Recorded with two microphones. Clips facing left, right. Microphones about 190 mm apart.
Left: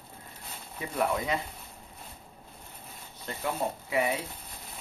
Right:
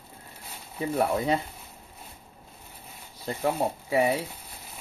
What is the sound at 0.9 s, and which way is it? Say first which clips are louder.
Speech: right 4 dB; 35° right (ahead or behind).